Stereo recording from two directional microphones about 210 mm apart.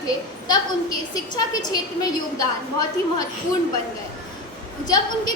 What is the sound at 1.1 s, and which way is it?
Speech, 20° left (ahead or behind).